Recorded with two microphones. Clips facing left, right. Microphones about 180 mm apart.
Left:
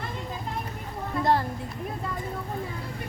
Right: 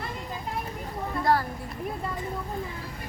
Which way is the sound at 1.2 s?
25° left (ahead or behind).